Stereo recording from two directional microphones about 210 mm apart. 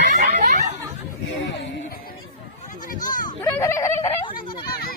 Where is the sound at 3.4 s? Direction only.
10° left (ahead or behind).